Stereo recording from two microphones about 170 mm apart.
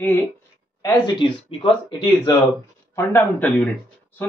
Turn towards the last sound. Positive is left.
turn(degrees=10)  # may be behind; listen again after turning